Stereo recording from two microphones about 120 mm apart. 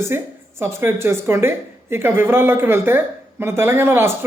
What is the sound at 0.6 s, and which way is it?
A man's voice, 20° right (ahead or behind).